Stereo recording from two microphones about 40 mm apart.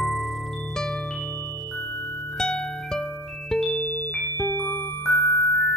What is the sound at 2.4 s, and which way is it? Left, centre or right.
Music, centre.